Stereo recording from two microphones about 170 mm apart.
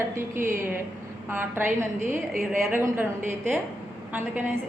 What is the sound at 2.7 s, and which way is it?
Speech, 10° right (ahead or behind).